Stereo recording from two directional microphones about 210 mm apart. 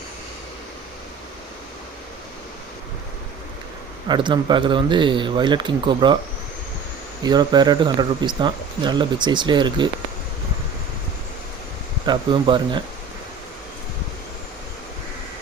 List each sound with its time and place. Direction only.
4.1 s speech: 20° right (ahead or behind)
7.3 s speech: 20° right (ahead or behind)
12.0 s speech: 20° right (ahead or behind)